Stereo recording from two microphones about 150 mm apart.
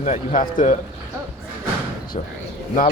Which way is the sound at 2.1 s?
45° left (ahead or behind).